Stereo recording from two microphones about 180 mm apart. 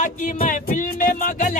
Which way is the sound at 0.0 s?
50° left (ahead or behind).